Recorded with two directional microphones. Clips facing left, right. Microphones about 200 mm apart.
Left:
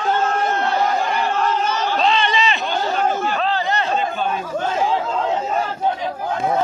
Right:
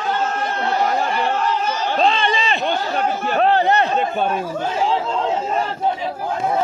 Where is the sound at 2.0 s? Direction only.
45° right (ahead or behind).